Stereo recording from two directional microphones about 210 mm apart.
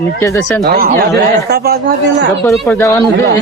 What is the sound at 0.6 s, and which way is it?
Speech, 45° right (ahead or behind).